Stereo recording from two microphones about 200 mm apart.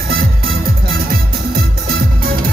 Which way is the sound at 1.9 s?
45° right (ahead or behind).